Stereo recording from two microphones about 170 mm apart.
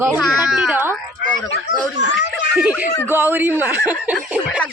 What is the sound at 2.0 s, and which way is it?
Speech, 90° left.